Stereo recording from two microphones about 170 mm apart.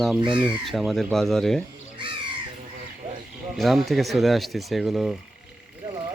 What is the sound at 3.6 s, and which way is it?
Speech, centre (ahead or behind).